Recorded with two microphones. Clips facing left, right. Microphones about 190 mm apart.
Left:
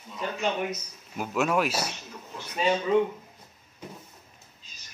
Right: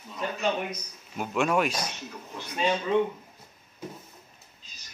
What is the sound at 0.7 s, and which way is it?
Speech, 5° left (ahead or behind).